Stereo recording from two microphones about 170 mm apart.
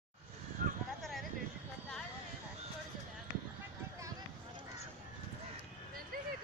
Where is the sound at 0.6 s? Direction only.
50° right (ahead or behind).